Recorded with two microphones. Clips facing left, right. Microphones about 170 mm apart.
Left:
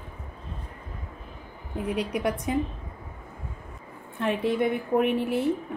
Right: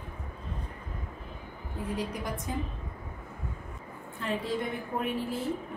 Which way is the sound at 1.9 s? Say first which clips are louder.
Left 7 dB; 70° left (ahead or behind).